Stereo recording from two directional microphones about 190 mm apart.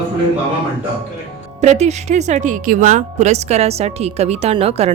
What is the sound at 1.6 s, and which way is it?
Speech, 35° right (ahead or behind).